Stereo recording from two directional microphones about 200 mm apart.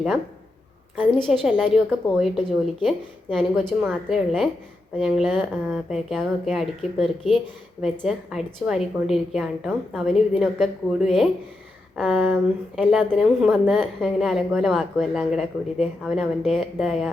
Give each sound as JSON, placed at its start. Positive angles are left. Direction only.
{"t": 1.3, "sound": "a woman's voice", "side_deg": 0}